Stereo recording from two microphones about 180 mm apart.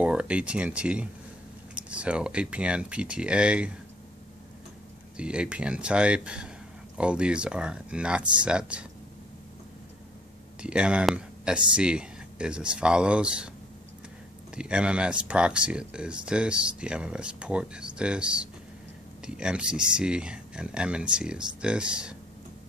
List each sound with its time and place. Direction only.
0.0 s speech: 5° right (ahead or behind)
5.1 s speech: 5° right (ahead or behind)
10.6 s speech: 5° right (ahead or behind)
14.5 s speech: 5° right (ahead or behind)